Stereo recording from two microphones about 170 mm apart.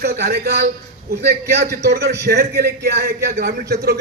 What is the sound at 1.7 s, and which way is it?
A man's voice, 60° right (ahead or behind).